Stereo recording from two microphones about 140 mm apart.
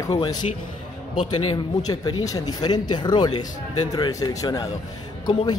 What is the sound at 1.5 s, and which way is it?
Speech, 30° left (ahead or behind).